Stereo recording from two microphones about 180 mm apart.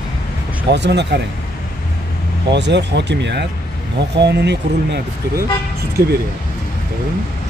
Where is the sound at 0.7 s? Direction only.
70° right (ahead or behind).